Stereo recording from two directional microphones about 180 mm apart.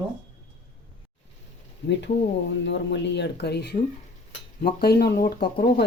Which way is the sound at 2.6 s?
75° left (ahead or behind).